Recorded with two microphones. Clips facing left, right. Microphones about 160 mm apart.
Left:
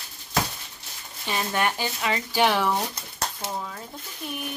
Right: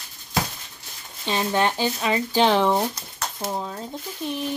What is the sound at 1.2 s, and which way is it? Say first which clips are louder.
Speech: right 4 dB; 20° right (ahead or behind).